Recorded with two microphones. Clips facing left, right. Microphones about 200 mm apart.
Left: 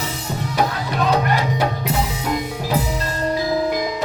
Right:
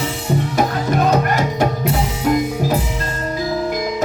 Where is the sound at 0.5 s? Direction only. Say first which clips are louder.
Right 1 dB; 45° right (ahead or behind).